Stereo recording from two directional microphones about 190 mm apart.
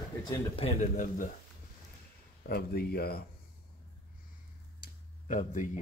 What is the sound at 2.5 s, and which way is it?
Speech, 55° left (ahead or behind).